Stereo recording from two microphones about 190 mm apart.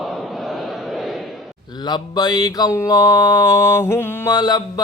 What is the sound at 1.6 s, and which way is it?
Speech, 20° left (ahead or behind).